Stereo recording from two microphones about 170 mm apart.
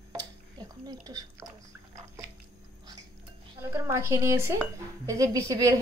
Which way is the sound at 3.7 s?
15° right (ahead or behind).